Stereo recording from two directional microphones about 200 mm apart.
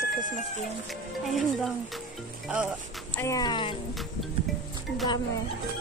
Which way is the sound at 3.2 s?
20° left (ahead or behind).